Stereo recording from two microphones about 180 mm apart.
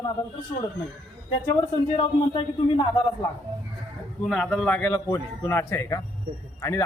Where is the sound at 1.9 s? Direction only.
30° left (ahead or behind).